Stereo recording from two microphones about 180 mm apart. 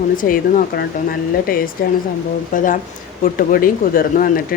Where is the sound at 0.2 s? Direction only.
50° left (ahead or behind).